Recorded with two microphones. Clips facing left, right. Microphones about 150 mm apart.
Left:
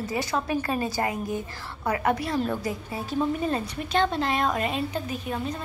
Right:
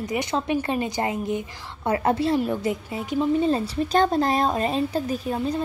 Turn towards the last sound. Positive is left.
turn(degrees=-35)  # may be behind; listen again after turning